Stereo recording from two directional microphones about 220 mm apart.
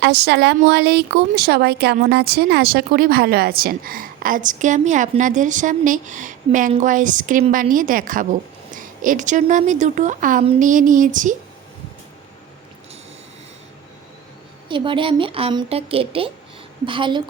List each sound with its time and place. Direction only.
0.0 s speech: 50° right (ahead or behind)
14.7 s speech: 25° right (ahead or behind)